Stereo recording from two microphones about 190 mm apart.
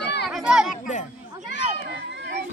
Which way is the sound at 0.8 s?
40° left (ahead or behind).